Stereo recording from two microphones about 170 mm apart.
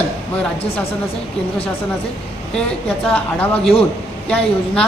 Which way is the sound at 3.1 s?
10° left (ahead or behind).